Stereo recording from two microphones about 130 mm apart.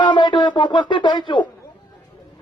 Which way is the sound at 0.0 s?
35° left (ahead or behind).